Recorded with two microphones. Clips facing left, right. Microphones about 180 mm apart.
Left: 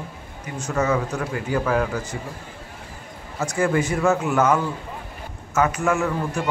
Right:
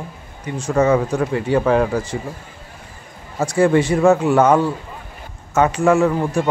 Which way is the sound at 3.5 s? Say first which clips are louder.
Right 7 dB; 30° right (ahead or behind).